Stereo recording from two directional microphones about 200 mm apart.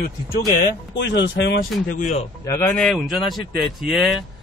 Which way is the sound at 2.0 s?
40° left (ahead or behind).